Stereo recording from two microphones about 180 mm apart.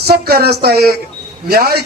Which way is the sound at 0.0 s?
60° right (ahead or behind).